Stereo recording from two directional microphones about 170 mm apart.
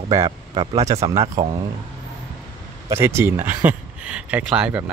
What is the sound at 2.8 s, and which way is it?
Speech, 15° right (ahead or behind).